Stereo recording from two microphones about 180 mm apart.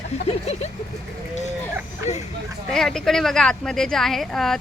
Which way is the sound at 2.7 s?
Centre (ahead or behind).